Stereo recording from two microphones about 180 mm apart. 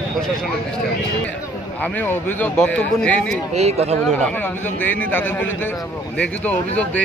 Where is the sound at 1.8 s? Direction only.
10° left (ahead or behind).